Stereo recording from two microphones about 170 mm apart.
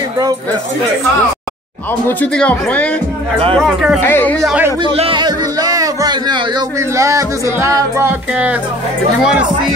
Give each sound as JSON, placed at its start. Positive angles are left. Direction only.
{"t": 2.0, "sound": "speech", "side_deg": 10}
{"t": 4.0, "sound": "speech", "side_deg": 10}
{"t": 4.5, "sound": "speech", "side_deg": -10}
{"t": 4.8, "sound": "speech", "side_deg": -30}